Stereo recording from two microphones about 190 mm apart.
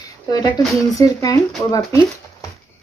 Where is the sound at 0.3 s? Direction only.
20° left (ahead or behind).